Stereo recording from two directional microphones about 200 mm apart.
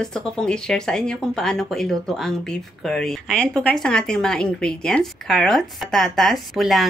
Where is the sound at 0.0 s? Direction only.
5° left (ahead or behind).